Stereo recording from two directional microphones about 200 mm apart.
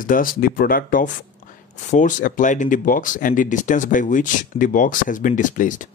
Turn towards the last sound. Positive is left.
turn(degrees=40)  # may be behind; listen again after turning